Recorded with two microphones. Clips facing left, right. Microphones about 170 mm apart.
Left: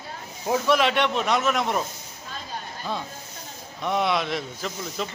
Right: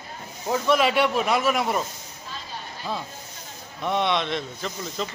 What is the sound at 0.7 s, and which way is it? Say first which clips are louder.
Speech: right 2 dB; 5° right (ahead or behind).